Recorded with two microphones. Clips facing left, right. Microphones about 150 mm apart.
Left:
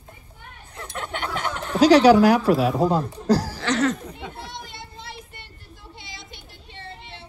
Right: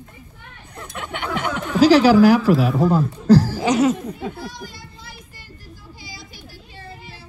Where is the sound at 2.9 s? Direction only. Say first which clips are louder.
Right 3 dB; 15° left (ahead or behind).